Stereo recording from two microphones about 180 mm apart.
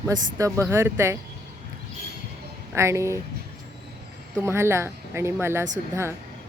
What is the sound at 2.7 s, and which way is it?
Speech, 15° right (ahead or behind).